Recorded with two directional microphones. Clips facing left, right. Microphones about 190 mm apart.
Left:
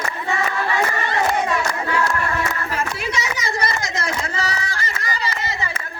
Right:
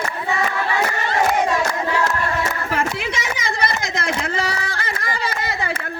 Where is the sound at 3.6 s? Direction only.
55° right (ahead or behind).